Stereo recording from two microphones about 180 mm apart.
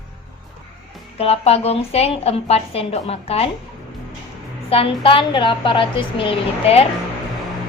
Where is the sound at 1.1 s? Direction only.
35° left (ahead or behind).